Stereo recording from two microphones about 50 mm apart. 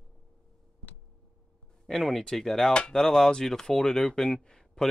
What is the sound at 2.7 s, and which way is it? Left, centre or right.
Speech, centre.